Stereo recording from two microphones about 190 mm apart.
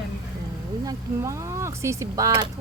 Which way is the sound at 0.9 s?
15° right (ahead or behind).